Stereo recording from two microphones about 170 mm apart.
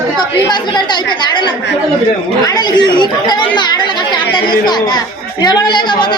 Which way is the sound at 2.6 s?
25° left (ahead or behind).